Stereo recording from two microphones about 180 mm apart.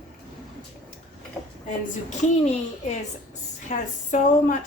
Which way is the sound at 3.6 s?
45° left (ahead or behind).